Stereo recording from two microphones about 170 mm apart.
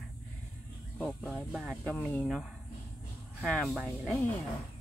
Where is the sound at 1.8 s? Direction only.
5° left (ahead or behind).